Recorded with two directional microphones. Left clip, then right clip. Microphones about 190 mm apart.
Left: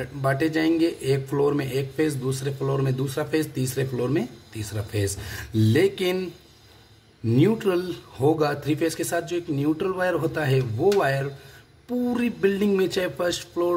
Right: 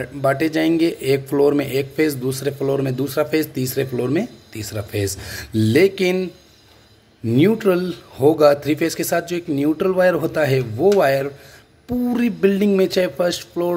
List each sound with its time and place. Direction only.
0.0 s speech: 20° right (ahead or behind)
7.2 s speech: 20° right (ahead or behind)